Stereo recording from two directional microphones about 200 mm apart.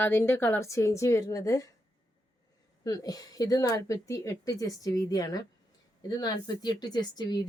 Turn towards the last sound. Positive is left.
turn(degrees=20)  # may be behind; listen again after turning